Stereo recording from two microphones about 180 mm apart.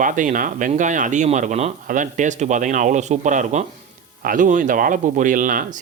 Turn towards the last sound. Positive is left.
turn(degrees=-45)  # may be behind; listen again after turning